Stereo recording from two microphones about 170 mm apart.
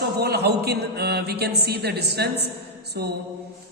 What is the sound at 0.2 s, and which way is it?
A man's voice, 70° right (ahead or behind).